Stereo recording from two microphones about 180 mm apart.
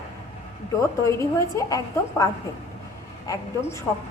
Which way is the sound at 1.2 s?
15° left (ahead or behind).